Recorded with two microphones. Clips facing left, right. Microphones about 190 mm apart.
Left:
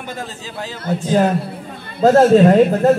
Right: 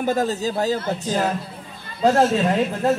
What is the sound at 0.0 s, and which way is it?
A man's voice, 40° right (ahead or behind).